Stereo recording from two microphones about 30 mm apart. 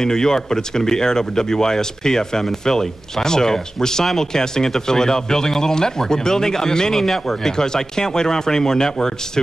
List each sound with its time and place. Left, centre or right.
0.0 s speech: centre
7.0 s speech: centre
7.5 s speech: left